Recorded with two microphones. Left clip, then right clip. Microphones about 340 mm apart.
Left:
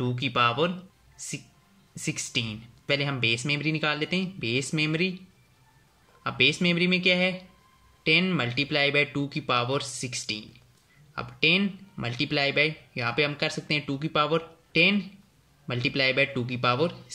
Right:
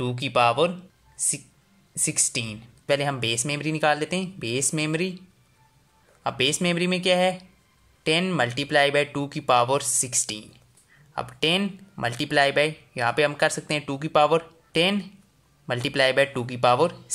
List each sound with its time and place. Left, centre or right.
0.0 s speech: centre
6.2 s speech: centre